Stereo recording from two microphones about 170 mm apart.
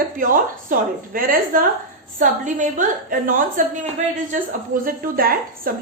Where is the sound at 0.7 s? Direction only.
55° right (ahead or behind).